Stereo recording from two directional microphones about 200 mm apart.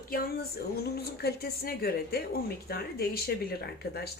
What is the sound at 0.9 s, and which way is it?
Speech, 50° left (ahead or behind).